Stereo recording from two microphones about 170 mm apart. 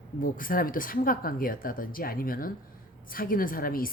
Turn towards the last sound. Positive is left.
turn(degrees=60)  # may be behind; listen again after turning